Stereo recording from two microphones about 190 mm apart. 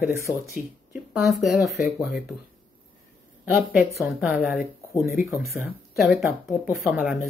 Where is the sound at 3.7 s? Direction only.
5° right (ahead or behind).